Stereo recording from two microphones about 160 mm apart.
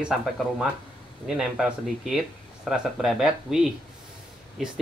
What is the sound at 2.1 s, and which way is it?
Speech, centre (ahead or behind).